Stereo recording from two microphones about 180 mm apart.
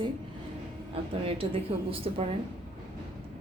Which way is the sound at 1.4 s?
30° right (ahead or behind).